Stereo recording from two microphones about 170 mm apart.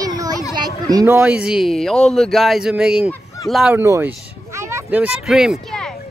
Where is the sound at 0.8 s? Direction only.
20° right (ahead or behind).